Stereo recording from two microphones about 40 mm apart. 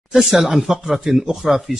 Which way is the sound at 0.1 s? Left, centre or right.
Centre.